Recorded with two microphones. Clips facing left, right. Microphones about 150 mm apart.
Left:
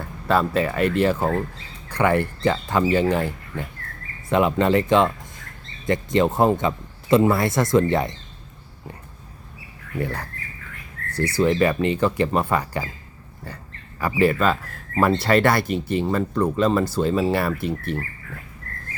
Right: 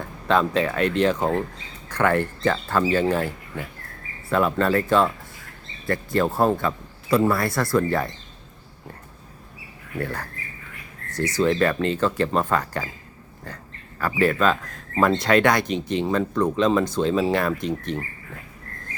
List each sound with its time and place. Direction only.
0.0 s speech: 5° left (ahead or behind)
4.3 s speech: 15° left (ahead or behind)
10.0 s speech: 10° left (ahead or behind)
11.3 s speech: 10° left (ahead or behind)
14.0 s speech: 10° left (ahead or behind)